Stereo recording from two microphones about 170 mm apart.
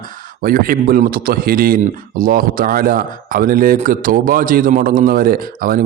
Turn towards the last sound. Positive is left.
turn(degrees=-55)  # may be behind; listen again after turning